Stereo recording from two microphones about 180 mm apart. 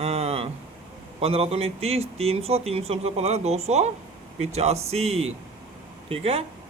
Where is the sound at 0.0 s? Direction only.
35° right (ahead or behind).